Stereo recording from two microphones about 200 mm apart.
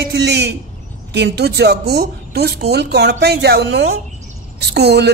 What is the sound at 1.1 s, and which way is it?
A woman's voice, 55° right (ahead or behind).